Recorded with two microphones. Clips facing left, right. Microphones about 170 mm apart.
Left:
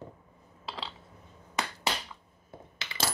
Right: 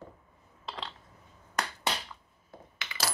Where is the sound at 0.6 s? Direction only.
Centre (ahead or behind).